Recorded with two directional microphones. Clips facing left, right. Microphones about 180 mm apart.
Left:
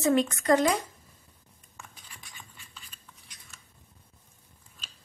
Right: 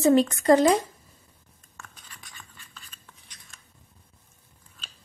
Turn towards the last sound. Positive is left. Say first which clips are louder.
# even
turn(degrees=10)  # may be behind; listen again after turning